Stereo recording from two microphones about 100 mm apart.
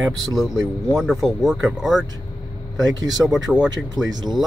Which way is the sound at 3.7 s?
40° right (ahead or behind).